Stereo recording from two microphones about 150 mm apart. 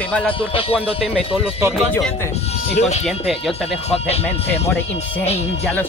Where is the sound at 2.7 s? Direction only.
45° left (ahead or behind).